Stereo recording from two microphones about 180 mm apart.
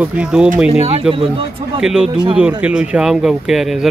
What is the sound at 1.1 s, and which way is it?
Speech, 30° right (ahead or behind).